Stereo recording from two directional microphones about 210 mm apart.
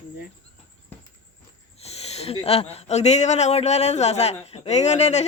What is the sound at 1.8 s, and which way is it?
Speech, 30° left (ahead or behind).